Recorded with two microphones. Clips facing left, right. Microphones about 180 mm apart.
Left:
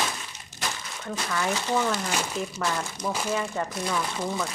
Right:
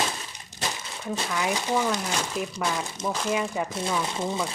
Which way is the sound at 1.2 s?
10° right (ahead or behind).